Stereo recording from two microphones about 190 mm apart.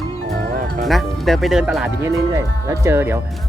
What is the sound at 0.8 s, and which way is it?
Speech, centre (ahead or behind).